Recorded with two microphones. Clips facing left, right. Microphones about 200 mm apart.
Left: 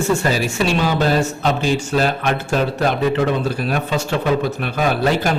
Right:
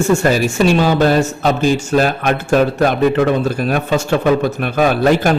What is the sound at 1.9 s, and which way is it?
Speech, 50° right (ahead or behind).